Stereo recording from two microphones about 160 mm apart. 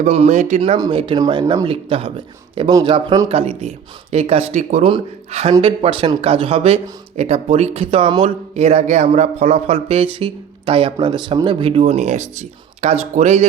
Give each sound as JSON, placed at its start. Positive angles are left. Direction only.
{"t": 0.0, "sound": "speech", "side_deg": -45}
{"t": 0.8, "sound": "speech", "side_deg": -30}
{"t": 3.2, "sound": "speech", "side_deg": -40}